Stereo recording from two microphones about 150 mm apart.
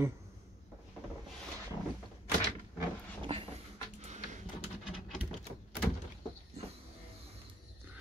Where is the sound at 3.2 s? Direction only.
35° right (ahead or behind).